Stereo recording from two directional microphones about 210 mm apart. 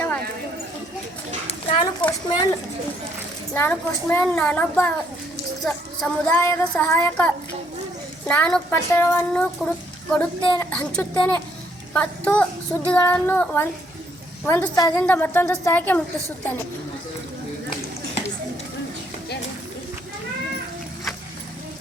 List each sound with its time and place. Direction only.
1.6 s a sound: 25° left (ahead or behind)
2.0 s a child's voice: 10° left (ahead or behind)
3.5 s a child's voice: 10° left (ahead or behind)